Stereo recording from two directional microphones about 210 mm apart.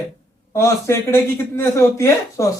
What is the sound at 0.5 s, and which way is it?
Speech, 15° left (ahead or behind).